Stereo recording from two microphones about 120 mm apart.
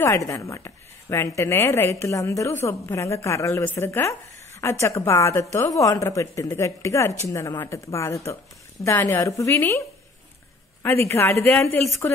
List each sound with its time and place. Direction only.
0.0 s a woman's voice: 25° left (ahead or behind)